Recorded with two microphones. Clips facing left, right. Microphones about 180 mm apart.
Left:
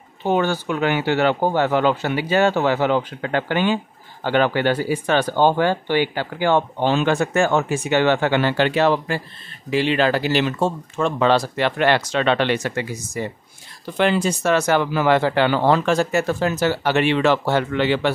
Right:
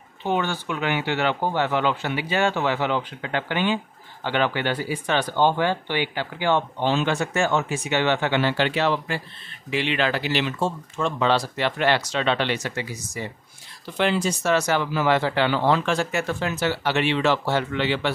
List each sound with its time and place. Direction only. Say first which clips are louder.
0.2 s speech: left 5 dB; 40° left (ahead or behind)